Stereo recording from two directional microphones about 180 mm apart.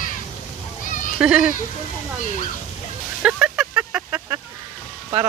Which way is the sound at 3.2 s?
5° right (ahead or behind).